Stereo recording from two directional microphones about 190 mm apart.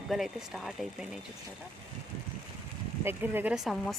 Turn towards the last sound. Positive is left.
turn(degrees=0)  # may be behind; listen again after turning